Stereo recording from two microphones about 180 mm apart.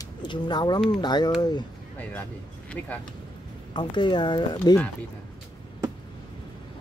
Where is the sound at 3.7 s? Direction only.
25° left (ahead or behind).